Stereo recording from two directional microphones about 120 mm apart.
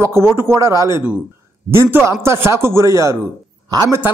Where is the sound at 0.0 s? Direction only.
20° right (ahead or behind).